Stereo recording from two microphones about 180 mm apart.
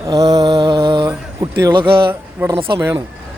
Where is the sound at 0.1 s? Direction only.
20° right (ahead or behind).